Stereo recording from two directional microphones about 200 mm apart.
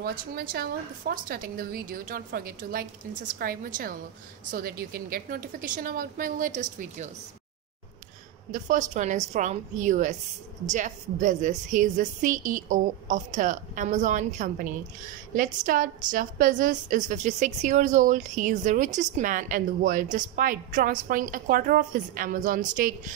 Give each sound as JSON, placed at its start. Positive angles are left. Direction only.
{"t": 0.0, "sound": "a woman's voice", "side_deg": -45}
{"t": 8.5, "sound": "a woman's voice", "side_deg": -40}